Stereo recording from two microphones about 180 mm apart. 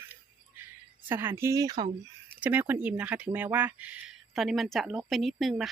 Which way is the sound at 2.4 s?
10° right (ahead or behind).